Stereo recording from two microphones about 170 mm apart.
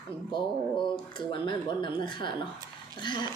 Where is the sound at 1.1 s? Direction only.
30° left (ahead or behind).